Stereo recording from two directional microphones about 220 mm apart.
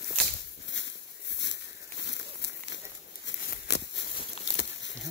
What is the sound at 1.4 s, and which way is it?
Crumpling, 55° left (ahead or behind).